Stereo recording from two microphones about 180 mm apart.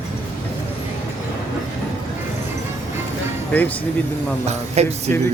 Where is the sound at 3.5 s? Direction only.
10° left (ahead or behind).